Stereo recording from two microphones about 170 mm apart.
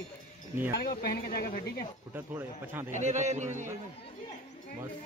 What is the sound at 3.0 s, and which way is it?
Speech, 45° right (ahead or behind).